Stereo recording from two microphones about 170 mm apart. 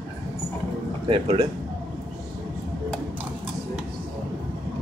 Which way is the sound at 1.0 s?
30° right (ahead or behind).